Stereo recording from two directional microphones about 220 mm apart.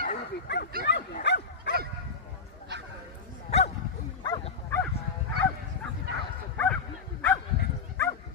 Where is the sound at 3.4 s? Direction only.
30° left (ahead or behind).